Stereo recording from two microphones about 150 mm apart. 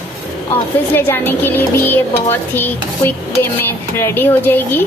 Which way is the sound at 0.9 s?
15° left (ahead or behind).